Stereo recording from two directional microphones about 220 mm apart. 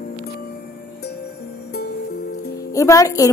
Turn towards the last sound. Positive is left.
turn(degrees=15)  # may be behind; listen again after turning